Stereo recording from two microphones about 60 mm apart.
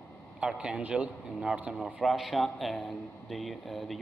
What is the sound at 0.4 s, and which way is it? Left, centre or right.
Speech, centre.